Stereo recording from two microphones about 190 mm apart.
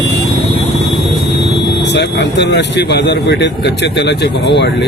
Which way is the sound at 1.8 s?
65° left (ahead or behind).